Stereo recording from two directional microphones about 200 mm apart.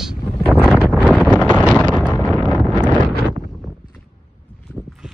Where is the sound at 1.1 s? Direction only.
5° right (ahead or behind).